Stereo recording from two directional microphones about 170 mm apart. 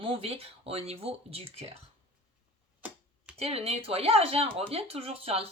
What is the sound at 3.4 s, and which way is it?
Speech, 35° right (ahead or behind).